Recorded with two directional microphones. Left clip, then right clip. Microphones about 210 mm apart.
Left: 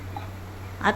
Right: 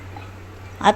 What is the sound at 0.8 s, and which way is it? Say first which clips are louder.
Speech: right 7 dB; 25° right (ahead or behind).